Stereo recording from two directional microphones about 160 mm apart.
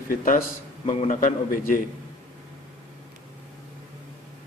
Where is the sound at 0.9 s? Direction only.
40° left (ahead or behind).